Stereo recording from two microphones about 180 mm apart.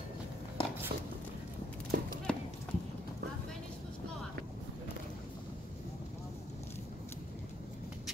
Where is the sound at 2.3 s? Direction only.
5° left (ahead or behind).